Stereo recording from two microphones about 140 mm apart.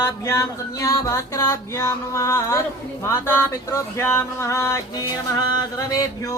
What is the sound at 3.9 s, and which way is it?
Speech, 20° left (ahead or behind).